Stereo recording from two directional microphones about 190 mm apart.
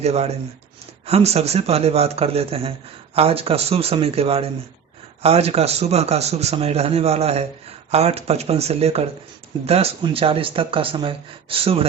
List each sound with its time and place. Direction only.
0.0 s a man's voice: 35° right (ahead or behind)